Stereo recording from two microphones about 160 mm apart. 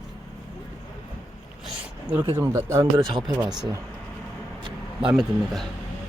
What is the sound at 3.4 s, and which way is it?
Speech, 5° right (ahead or behind).